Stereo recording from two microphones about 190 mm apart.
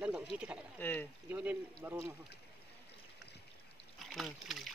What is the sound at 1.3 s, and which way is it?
Speech, 10° right (ahead or behind).